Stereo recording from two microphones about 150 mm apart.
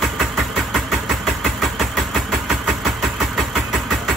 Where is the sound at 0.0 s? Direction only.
Centre (ahead or behind).